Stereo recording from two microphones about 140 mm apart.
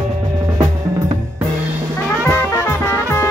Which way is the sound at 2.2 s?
15° left (ahead or behind).